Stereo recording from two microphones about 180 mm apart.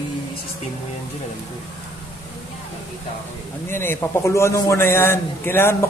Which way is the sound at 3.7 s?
15° left (ahead or behind).